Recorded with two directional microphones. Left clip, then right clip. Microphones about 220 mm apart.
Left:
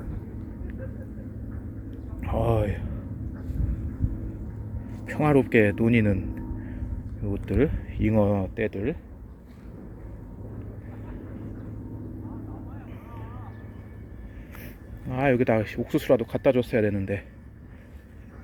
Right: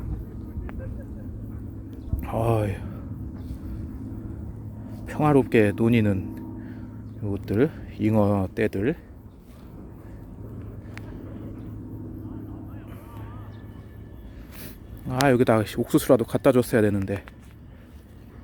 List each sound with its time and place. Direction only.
1.9 s a sound: 5° right (ahead or behind)
5.1 s speech: 5° right (ahead or behind); by 9.0 s 25° right (ahead or behind)
14.6 s speech: 15° right (ahead or behind)